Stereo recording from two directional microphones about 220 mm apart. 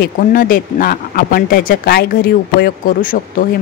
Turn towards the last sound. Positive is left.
turn(degrees=40)  # may be behind; listen again after turning